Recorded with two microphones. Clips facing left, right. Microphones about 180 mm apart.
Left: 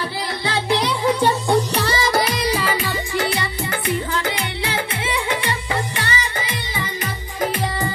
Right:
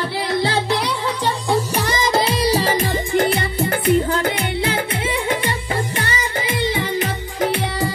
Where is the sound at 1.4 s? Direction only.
5° right (ahead or behind).